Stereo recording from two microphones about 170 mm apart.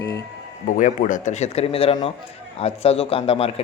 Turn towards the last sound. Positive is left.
turn(degrees=35)  # may be behind; listen again after turning